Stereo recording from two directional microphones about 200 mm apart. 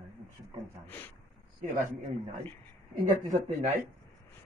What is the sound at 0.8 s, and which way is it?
Speech, 10° left (ahead or behind).